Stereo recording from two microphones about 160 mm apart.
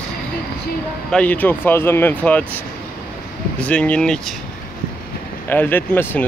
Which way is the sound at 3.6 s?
10° left (ahead or behind).